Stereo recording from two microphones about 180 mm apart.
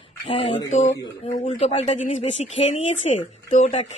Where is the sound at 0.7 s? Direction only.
40° left (ahead or behind).